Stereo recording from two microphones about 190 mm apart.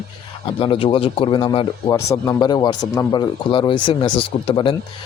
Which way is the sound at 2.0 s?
15° left (ahead or behind).